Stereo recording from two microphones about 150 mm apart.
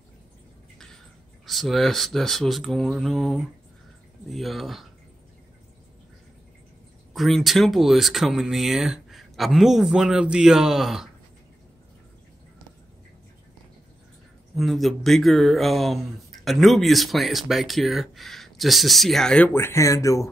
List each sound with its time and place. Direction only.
1.4 s speech: centre (ahead or behind)
7.2 s speech: centre (ahead or behind)
14.5 s speech: centre (ahead or behind)
19.5 s speech: 15° left (ahead or behind)